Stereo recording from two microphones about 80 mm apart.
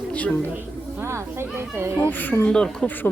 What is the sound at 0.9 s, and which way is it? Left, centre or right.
Snake, right.